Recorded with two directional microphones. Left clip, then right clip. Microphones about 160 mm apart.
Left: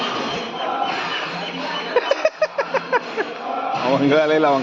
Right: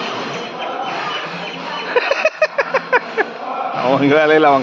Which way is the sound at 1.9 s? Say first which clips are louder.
Right 3 dB; 20° right (ahead or behind).